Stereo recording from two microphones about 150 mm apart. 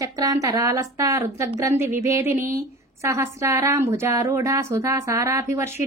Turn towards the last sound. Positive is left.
turn(degrees=-20)  # may be behind; listen again after turning